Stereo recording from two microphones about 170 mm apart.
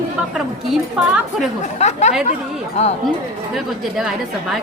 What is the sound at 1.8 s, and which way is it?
Speech, 45° left (ahead or behind).